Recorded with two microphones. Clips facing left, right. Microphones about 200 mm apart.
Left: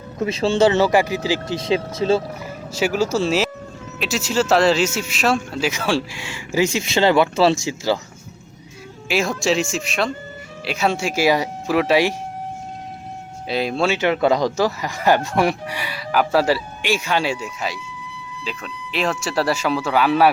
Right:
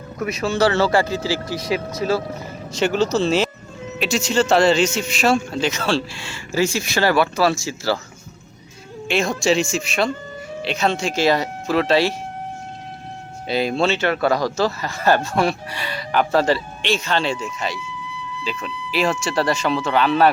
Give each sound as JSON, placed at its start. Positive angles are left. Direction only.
{"t": 0.2, "sound": "speech", "side_deg": 30}
{"t": 2.7, "sound": "speech", "side_deg": 5}
{"t": 9.0, "sound": "speech", "side_deg": 5}
{"t": 13.5, "sound": "speech", "side_deg": 0}